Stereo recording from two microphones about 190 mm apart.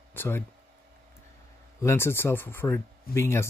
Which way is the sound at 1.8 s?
10° left (ahead or behind).